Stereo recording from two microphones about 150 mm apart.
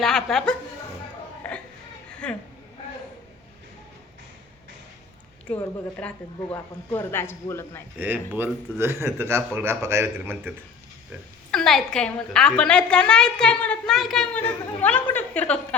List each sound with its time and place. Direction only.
0.0 s speech: 5° left (ahead or behind)
1.5 s a sound: 10° left (ahead or behind)
2.2 s speech: 5° left (ahead or behind)
5.5 s a woman's voice: 10° left (ahead or behind)
7.9 s a man's voice: 10° right (ahead or behind)
11.5 s a woman's voice: 5° left (ahead or behind)